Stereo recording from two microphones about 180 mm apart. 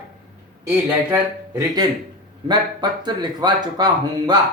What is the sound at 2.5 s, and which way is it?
Speech, 25° right (ahead or behind).